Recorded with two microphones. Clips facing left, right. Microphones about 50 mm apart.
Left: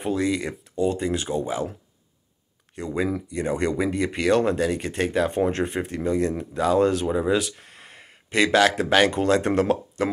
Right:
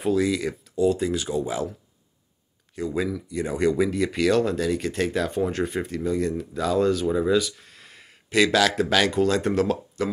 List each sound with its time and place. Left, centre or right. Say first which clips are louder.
0.1 s speech: right 2 dB; left
3.1 s speech: left 2 dB; left
7.1 s speech: even; left
7.3 s speech: right 2 dB; left